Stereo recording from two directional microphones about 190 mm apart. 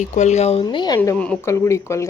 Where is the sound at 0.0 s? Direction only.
40° left (ahead or behind).